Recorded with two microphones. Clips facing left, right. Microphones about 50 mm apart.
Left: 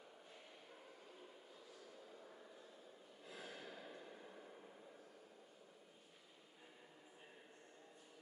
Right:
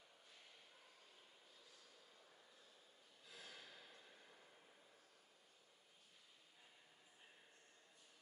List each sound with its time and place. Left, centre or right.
3.3 s gasp: left